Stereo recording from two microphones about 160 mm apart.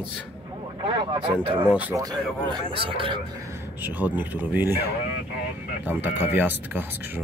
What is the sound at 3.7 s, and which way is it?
Speech, 10° right (ahead or behind).